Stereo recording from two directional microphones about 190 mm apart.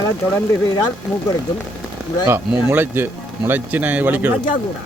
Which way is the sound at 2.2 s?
10° right (ahead or behind).